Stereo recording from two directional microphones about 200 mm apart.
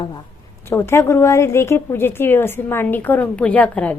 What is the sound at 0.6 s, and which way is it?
A woman's voice, 10° left (ahead or behind).